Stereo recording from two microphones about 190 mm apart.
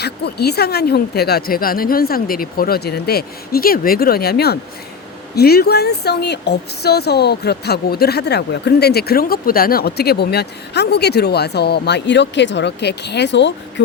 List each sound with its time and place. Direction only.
0.0 s a woman's voice: 60° left (ahead or behind)